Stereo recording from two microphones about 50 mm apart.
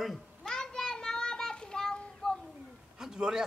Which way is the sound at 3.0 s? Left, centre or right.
Centre.